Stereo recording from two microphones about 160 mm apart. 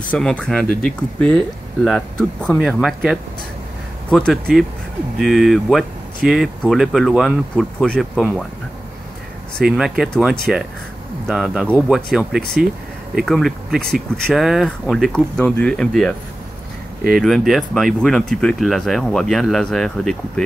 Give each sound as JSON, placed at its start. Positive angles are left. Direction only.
{"t": 0.1, "sound": "speech", "side_deg": 5}
{"t": 9.6, "sound": "speech", "side_deg": 0}